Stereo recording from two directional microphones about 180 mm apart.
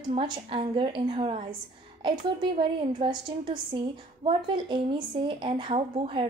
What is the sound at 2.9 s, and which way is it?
A woman's voice, 25° right (ahead or behind).